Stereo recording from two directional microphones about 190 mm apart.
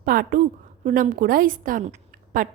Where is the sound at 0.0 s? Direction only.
50° right (ahead or behind).